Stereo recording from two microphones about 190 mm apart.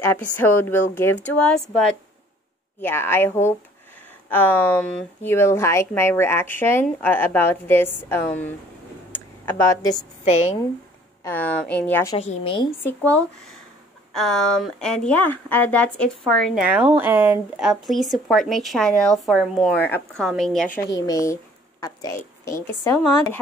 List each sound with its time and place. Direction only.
0.0 s speech: 10° left (ahead or behind)
10.2 s a woman's voice: 35° left (ahead or behind)
11.2 s speech: 10° left (ahead or behind)
12.2 s a woman's voice: 30° left (ahead or behind)
12.8 s speech: 10° left (ahead or behind)
20.9 s speech: 20° left (ahead or behind)